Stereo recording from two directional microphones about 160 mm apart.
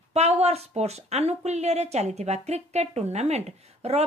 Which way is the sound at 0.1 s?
40° right (ahead or behind).